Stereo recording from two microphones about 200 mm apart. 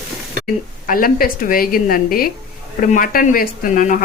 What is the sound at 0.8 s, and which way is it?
Speech, 45° left (ahead or behind).